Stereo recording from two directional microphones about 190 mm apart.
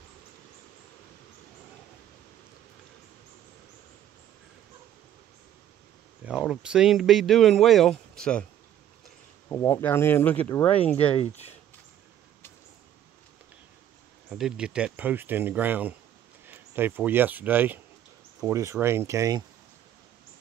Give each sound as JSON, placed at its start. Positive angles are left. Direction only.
{"t": 6.2, "sound": "speech", "side_deg": -5}
{"t": 9.5, "sound": "speech", "side_deg": 15}
{"t": 11.1, "sound": "speech", "side_deg": 35}
{"t": 14.3, "sound": "speech", "side_deg": -5}